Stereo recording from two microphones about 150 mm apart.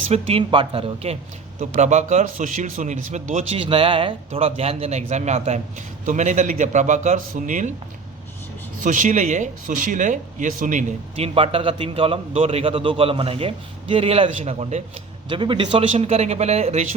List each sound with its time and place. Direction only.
0.1 s a man's voice: 40° right (ahead or behind)
3.6 s a man's voice: 35° right (ahead or behind); by 7.7 s 60° right (ahead or behind)
8.8 s speech: 60° right (ahead or behind)
11.2 s a man's voice: 40° right (ahead or behind)
15.3 s a man's voice: 35° right (ahead or behind)